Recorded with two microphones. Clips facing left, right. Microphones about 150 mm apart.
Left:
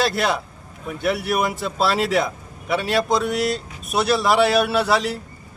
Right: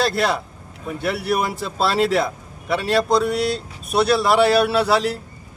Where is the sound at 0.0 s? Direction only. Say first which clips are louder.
Right 1 dB; centre (ahead or behind).